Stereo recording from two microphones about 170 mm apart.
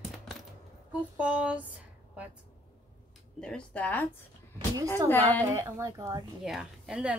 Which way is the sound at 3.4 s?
5° left (ahead or behind).